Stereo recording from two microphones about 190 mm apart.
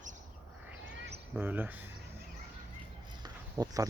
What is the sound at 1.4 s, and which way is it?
Speech, 10° right (ahead or behind).